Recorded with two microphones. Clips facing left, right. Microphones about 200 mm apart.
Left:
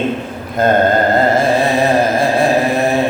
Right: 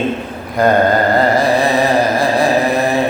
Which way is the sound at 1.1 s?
25° left (ahead or behind).